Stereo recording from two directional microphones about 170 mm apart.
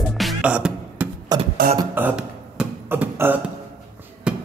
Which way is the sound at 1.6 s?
55° right (ahead or behind).